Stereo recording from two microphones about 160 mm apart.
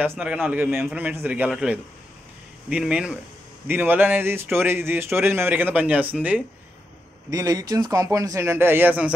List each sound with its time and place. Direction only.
0.0 s a man's voice: 10° right (ahead or behind)
7.2 s speech: 20° right (ahead or behind)